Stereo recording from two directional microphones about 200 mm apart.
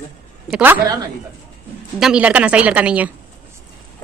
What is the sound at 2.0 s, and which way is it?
A woman's voice, 5° right (ahead or behind).